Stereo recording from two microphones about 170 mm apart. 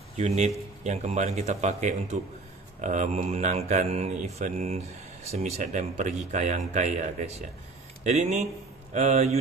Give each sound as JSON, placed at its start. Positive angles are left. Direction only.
{"t": 0.2, "sound": "speech", "side_deg": -40}